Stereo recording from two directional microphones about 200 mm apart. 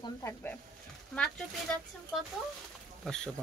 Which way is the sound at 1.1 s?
5° left (ahead or behind).